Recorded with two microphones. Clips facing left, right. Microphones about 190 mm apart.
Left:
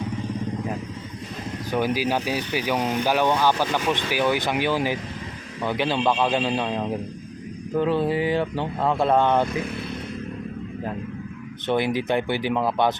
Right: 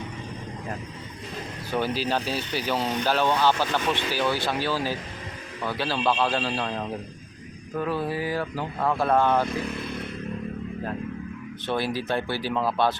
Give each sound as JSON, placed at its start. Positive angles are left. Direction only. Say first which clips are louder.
{"t": 1.7, "sound": "speech", "louder": "left 3 dB", "side_deg": 15}
{"t": 11.6, "sound": "speech", "louder": "left 5 dB", "side_deg": 20}